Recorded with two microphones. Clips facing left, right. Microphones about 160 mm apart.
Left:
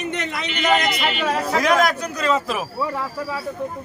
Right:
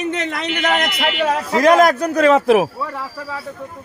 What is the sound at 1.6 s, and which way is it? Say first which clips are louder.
A man's voice: right 8 dB; 45° right (ahead or behind).